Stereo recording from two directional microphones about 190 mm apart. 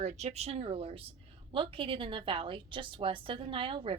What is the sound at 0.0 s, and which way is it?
A woman's voice, 35° right (ahead or behind).